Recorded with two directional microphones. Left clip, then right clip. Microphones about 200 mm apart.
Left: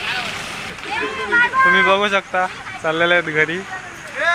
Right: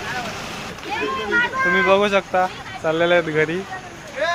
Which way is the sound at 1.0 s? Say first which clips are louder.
Left 3 dB; 10° right (ahead or behind).